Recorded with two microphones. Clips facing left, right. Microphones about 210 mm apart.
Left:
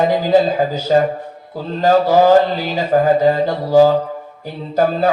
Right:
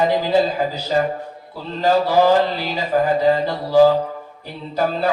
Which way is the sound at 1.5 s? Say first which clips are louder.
Left 4 dB; 45° left (ahead or behind).